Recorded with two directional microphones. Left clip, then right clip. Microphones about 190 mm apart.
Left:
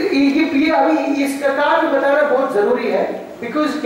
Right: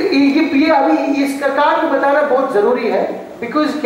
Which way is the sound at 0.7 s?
20° left (ahead or behind).